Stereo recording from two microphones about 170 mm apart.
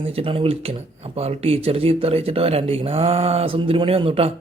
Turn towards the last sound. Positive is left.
turn(degrees=-35)  # may be behind; listen again after turning